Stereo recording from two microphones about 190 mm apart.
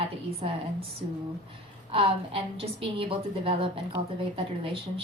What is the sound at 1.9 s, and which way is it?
A woman's voice, 30° right (ahead or behind).